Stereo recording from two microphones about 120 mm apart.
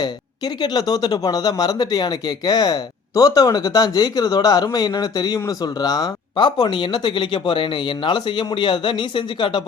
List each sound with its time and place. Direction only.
0.0 s speech: 35° left (ahead or behind)